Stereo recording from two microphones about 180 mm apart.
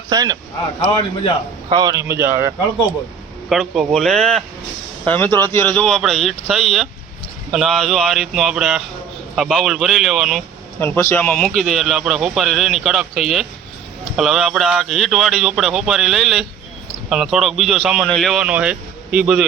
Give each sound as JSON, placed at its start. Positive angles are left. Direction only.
{"t": 0.1, "sound": "speech", "side_deg": -20}
{"t": 1.7, "sound": "speech", "side_deg": -20}
{"t": 3.5, "sound": "speech", "side_deg": 0}
{"t": 10.8, "sound": "speech", "side_deg": 10}